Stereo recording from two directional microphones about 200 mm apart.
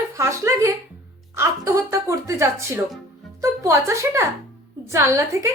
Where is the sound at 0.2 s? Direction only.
15° right (ahead or behind).